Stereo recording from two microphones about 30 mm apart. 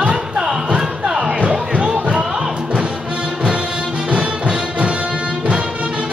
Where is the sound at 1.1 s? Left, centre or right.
Right.